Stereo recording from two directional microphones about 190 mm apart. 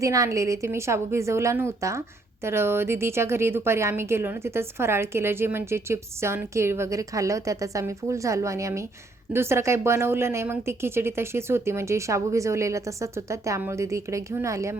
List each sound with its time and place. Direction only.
0.0 s a woman's voice: 15° right (ahead or behind)